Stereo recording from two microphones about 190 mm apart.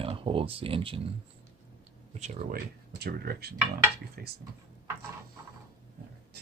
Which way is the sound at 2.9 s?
55° right (ahead or behind).